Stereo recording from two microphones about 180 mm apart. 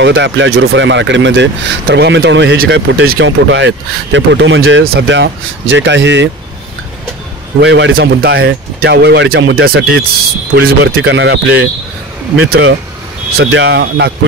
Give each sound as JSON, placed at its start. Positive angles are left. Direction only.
{"t": 0.0, "sound": "speech", "side_deg": -85}
{"t": 7.6, "sound": "speech", "side_deg": -75}
{"t": 12.4, "sound": "speech", "side_deg": -85}